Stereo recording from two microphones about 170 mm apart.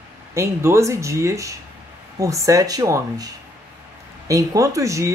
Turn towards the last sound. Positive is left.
turn(degrees=-20)  # may be behind; listen again after turning